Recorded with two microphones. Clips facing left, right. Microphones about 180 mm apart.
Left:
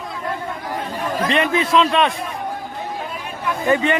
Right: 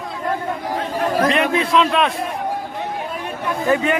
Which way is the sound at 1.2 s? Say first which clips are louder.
Right 1 dB; centre (ahead or behind).